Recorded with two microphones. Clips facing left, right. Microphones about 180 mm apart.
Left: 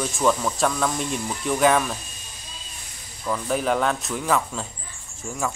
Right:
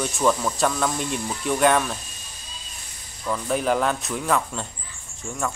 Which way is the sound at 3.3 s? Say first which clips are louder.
Even; centre (ahead or behind).